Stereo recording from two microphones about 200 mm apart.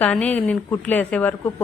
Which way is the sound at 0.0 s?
10° left (ahead or behind).